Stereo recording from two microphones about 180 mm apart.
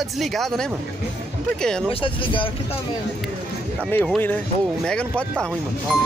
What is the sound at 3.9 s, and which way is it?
Speech, 10° left (ahead or behind).